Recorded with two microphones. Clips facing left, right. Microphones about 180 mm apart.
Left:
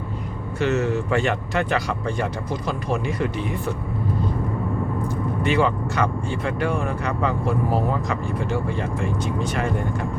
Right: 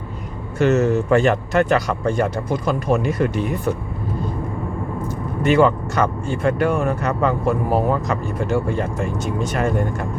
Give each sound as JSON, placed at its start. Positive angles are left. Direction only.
{"t": 0.6, "sound": "speech", "side_deg": -45}
{"t": 5.0, "sound": "speech", "side_deg": -45}